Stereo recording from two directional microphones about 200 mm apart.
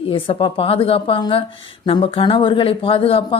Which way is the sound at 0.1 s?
25° left (ahead or behind).